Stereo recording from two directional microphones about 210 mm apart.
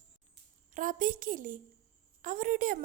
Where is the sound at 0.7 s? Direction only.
40° right (ahead or behind).